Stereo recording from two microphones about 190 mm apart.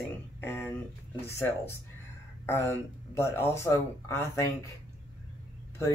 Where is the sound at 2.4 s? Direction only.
15° left (ahead or behind).